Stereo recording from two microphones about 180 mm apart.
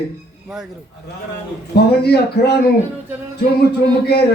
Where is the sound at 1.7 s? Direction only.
65° left (ahead or behind).